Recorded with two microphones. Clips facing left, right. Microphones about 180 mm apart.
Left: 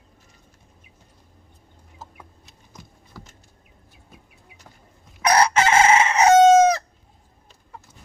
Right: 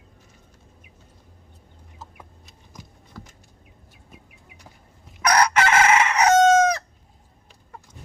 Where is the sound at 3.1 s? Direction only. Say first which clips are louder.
Right 2 dB; 5° left (ahead or behind).